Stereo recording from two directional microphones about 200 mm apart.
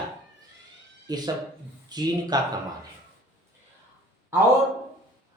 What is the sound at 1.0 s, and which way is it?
Speech, 20° right (ahead or behind).